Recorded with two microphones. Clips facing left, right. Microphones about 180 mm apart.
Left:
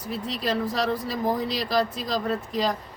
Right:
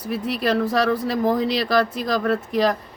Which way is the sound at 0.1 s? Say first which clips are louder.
Right 6 dB; 70° right (ahead or behind).